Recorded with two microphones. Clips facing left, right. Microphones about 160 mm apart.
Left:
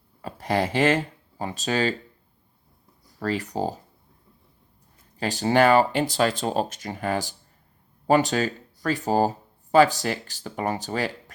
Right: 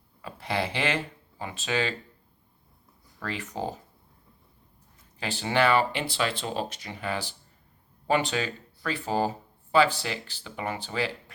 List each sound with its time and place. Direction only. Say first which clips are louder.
0.2 s speech: left 5 dB; 40° left (ahead or behind)
3.1 s speech: left 8 dB; 35° left (ahead or behind)
5.2 s speech: left 5 dB; 40° left (ahead or behind)